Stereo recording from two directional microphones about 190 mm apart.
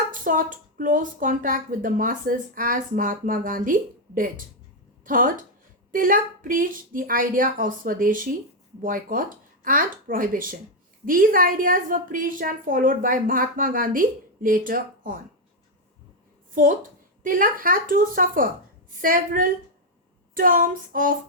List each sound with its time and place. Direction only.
0.1 s speech: 45° right (ahead or behind)
17.2 s speech: 45° right (ahead or behind)